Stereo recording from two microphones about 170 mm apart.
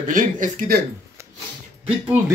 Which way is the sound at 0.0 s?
50° right (ahead or behind).